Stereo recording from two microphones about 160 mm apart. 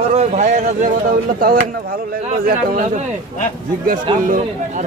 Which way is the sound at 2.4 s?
45° right (ahead or behind).